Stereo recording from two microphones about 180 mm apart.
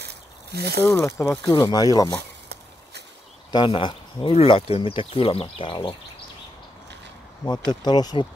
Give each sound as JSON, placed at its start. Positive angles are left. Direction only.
{"t": 0.0, "sound": "a sound", "side_deg": -65}
{"t": 1.2, "sound": "speech", "side_deg": 15}
{"t": 1.5, "sound": "speech", "side_deg": 25}
{"t": 2.1, "sound": "a sound", "side_deg": -65}
{"t": 3.5, "sound": "speech", "side_deg": 25}
{"t": 7.4, "sound": "speech", "side_deg": 25}